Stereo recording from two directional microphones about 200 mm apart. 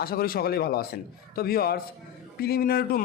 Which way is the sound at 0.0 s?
50° left (ahead or behind).